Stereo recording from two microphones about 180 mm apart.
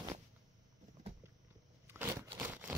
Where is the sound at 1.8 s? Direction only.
10° right (ahead or behind).